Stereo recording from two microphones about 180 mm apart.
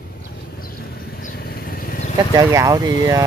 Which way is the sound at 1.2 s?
55° left (ahead or behind).